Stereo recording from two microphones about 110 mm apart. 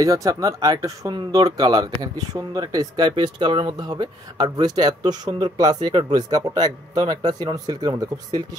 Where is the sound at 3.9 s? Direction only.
35° right (ahead or behind).